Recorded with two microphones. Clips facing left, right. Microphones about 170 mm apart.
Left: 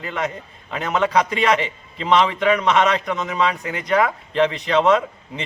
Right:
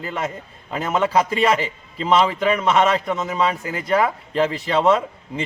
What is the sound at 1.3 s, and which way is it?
A man's voice, 35° right (ahead or behind).